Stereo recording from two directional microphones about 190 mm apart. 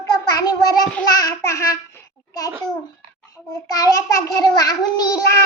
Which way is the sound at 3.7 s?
20° left (ahead or behind).